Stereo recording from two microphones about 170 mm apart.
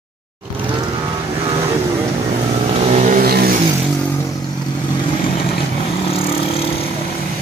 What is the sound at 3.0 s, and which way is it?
Vehicle, 55° right (ahead or behind).